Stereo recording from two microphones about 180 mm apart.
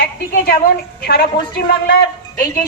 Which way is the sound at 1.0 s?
60° left (ahead or behind).